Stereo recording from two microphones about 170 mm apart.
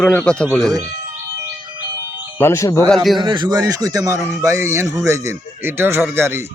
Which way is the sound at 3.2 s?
25° right (ahead or behind).